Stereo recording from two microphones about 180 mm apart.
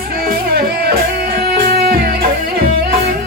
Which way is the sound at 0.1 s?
60° right (ahead or behind).